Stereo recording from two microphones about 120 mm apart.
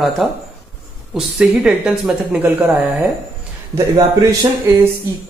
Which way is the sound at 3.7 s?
30° right (ahead or behind).